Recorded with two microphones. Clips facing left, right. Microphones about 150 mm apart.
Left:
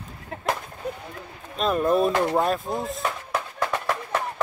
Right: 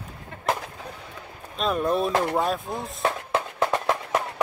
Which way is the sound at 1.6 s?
Centre (ahead or behind).